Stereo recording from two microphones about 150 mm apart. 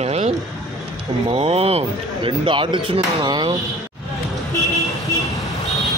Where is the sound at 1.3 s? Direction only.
40° right (ahead or behind).